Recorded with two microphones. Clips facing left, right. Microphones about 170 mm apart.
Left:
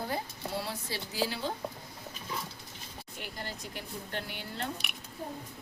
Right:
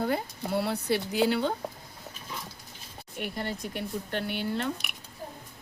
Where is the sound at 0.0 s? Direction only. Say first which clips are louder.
Right 6 dB; 60° right (ahead or behind).